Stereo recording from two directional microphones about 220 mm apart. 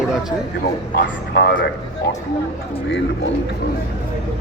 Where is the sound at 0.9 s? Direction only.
45° left (ahead or behind).